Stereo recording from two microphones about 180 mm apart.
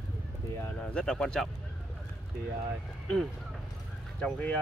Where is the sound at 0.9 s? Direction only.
5° left (ahead or behind).